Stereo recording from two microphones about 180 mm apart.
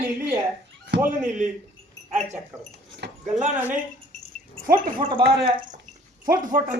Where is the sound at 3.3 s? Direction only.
45° right (ahead or behind).